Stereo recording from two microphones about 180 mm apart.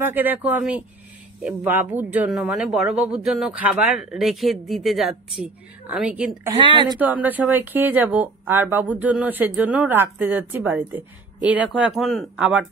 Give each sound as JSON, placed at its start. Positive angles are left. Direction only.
{"t": 0.0, "sound": "speech", "side_deg": -10}
{"t": 6.5, "sound": "speech", "side_deg": -25}
{"t": 7.0, "sound": "speech", "side_deg": -10}